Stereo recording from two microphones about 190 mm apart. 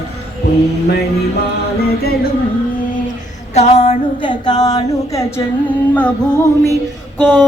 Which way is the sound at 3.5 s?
35° left (ahead or behind).